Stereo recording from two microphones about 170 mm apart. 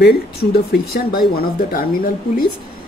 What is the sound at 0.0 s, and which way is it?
Speech, 70° left (ahead or behind).